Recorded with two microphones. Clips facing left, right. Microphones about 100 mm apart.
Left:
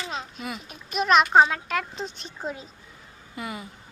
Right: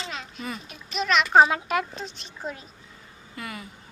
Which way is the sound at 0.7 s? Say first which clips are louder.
Left 5 dB; 45° left (ahead or behind).